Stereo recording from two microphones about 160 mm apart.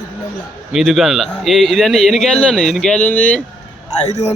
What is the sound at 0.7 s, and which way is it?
A man's voice, centre (ahead or behind).